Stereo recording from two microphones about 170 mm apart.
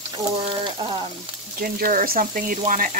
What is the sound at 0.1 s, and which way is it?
Frying, 30° right (ahead or behind).